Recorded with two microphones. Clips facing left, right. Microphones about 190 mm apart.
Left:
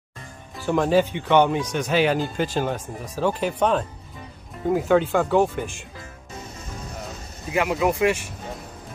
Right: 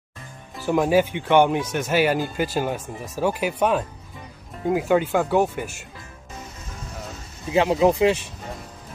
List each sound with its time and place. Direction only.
0.7 s speech: 10° right (ahead or behind)
7.5 s speech: 25° right (ahead or behind)